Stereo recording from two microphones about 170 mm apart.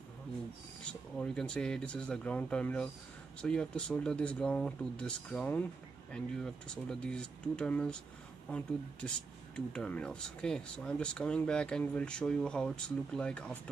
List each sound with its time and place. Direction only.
1.1 s speech: 5° left (ahead or behind)